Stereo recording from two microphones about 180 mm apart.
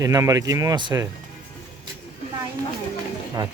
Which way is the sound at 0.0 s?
20° right (ahead or behind).